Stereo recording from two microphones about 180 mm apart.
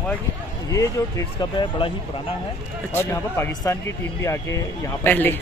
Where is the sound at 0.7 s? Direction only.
20° left (ahead or behind).